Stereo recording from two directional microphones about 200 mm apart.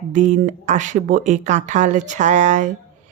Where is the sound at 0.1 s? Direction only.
40° right (ahead or behind).